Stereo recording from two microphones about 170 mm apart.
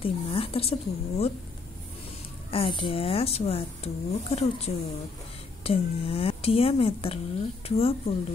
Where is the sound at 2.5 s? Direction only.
30° left (ahead or behind).